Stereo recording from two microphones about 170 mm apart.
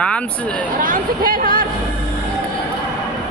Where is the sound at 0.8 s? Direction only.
55° right (ahead or behind).